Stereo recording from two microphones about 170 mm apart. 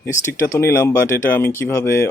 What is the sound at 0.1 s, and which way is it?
Speech, 15° left (ahead or behind).